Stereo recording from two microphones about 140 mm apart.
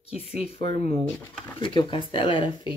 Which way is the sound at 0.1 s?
45° left (ahead or behind).